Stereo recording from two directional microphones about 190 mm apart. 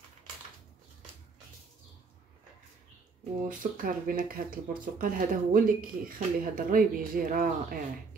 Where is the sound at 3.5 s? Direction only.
45° right (ahead or behind).